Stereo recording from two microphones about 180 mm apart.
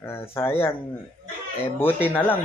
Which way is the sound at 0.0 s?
15° left (ahead or behind).